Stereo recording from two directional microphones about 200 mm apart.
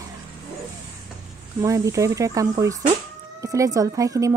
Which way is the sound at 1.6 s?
15° right (ahead or behind).